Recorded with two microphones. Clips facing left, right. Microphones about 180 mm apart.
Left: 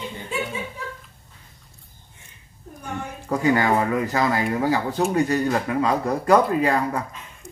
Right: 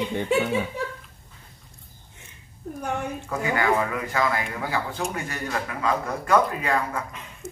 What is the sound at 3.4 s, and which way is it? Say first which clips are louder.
Speech: left 4 dB; 35° left (ahead or behind).